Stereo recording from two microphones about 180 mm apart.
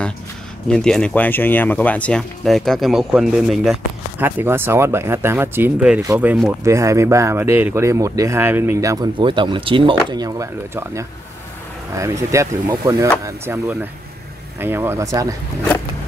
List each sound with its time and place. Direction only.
0.7 s speech: 5° left (ahead or behind)
4.2 s speech: 10° right (ahead or behind)